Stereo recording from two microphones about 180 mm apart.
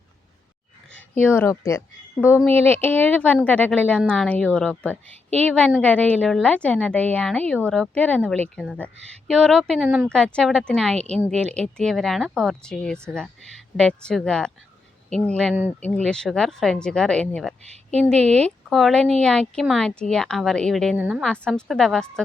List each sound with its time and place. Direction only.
1.1 s a woman's voice: 10° left (ahead or behind); by 10.1 s 5° right (ahead or behind)
10.1 s a woman's voice: 5° left (ahead or behind)